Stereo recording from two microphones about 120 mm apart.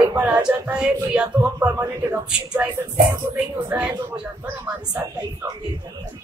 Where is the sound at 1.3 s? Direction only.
30° right (ahead or behind).